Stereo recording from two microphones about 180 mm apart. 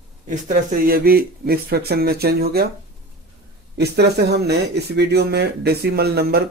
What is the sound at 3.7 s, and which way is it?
Speech, 65° right (ahead or behind).